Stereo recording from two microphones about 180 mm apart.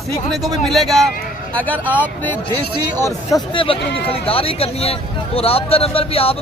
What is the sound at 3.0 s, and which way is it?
Speech, 25° left (ahead or behind).